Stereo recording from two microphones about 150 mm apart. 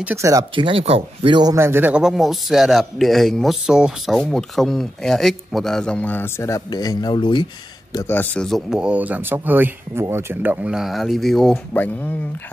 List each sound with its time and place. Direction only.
0.0 s speech: 15° right (ahead or behind)
0.7 s speech: 40° right (ahead or behind); by 7.4 s 30° left (ahead or behind)
7.9 s speech: 15° left (ahead or behind)